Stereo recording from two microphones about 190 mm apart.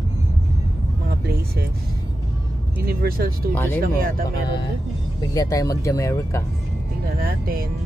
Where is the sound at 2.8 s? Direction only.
50° right (ahead or behind).